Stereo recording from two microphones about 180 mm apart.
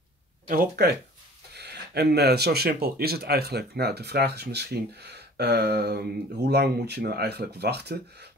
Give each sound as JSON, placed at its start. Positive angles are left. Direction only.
{"t": 0.5, "sound": "speech", "side_deg": -55}